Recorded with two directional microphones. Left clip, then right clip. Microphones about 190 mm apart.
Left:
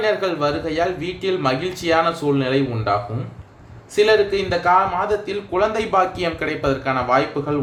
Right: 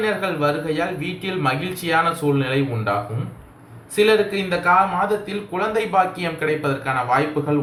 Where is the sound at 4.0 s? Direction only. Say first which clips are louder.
Left 1 dB; 45° left (ahead or behind).